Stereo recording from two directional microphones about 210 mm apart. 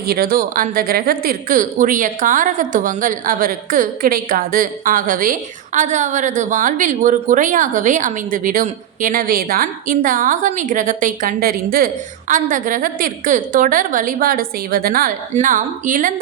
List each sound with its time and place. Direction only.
0.1 s a woman's voice: 45° right (ahead or behind)